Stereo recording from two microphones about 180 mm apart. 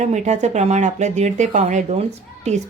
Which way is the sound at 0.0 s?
40° right (ahead or behind).